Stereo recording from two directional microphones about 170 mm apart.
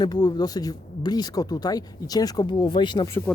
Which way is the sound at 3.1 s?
15° left (ahead or behind).